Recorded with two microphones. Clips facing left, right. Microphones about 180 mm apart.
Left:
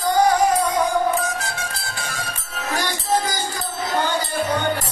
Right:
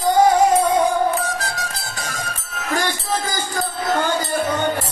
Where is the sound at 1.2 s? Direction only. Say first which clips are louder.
Right 1 dB; 35° right (ahead or behind).